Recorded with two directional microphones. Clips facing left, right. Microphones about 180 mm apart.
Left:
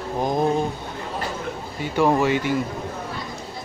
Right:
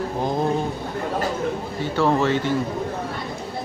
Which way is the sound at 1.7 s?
15° left (ahead or behind).